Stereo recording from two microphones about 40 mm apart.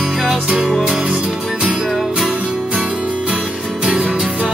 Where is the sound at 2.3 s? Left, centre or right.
Right.